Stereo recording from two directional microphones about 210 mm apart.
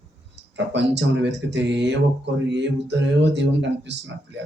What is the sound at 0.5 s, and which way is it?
Speech, 55° right (ahead or behind).